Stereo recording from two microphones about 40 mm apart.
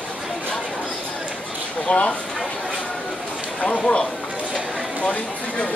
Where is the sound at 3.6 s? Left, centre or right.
Left.